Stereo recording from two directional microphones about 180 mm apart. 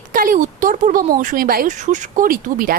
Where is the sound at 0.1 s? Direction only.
50° right (ahead or behind).